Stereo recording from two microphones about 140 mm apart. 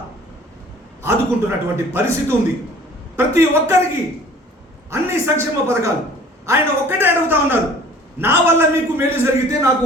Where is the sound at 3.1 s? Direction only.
20° right (ahead or behind).